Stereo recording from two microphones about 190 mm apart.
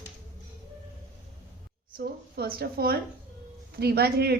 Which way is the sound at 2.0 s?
50° right (ahead or behind).